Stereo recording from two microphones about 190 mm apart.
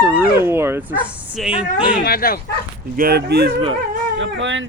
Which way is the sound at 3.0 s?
55° right (ahead or behind).